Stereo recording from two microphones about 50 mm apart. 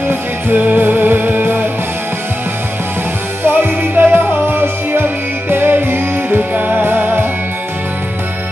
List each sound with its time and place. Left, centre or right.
0.1 s music: right
3.4 s music: right